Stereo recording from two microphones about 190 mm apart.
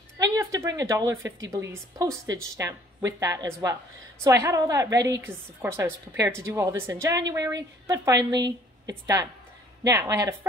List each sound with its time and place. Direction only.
0.2 s a woman's voice: 15° right (ahead or behind)